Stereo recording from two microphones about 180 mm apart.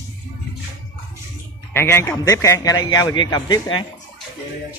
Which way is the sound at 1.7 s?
15° left (ahead or behind).